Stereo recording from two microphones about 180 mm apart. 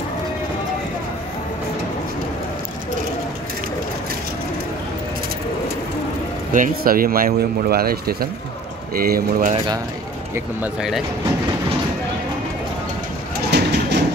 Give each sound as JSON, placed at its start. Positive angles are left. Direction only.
{"t": 6.5, "sound": "speech", "side_deg": -50}
{"t": 10.3, "sound": "speech", "side_deg": -5}
{"t": 13.5, "sound": "a sound", "side_deg": -65}